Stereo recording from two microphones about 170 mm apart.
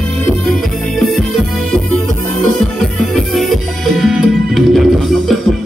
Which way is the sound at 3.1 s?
Centre (ahead or behind).